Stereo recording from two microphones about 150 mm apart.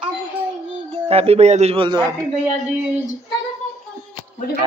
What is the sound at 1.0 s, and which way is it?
Speech, 40° right (ahead or behind).